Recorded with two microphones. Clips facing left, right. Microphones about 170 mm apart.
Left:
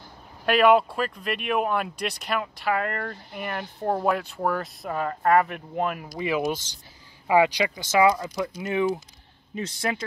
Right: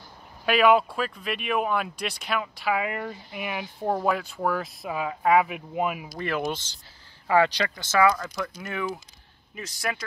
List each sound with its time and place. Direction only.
0.5 s speech: centre (ahead or behind)
6.1 s speech: 10° left (ahead or behind); by 10.0 s 25° left (ahead or behind)